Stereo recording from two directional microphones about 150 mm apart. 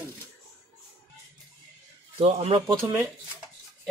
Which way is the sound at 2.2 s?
40° right (ahead or behind).